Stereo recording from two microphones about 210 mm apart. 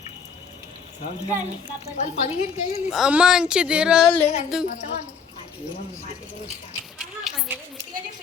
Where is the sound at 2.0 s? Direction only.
35° left (ahead or behind).